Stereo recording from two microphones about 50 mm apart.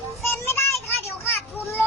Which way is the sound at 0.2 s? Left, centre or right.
Left.